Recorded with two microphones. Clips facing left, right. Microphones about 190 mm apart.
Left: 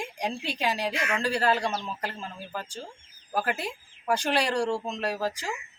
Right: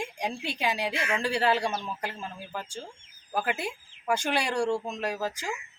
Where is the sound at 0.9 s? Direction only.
30° right (ahead or behind).